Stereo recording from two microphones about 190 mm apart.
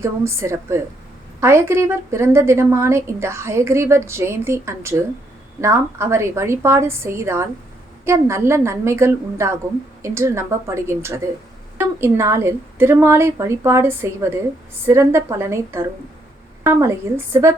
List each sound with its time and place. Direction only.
0.0 s a woman's voice: 15° right (ahead or behind)